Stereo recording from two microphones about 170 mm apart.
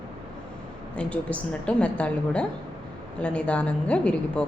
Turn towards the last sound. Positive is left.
turn(degrees=5)  # may be behind; listen again after turning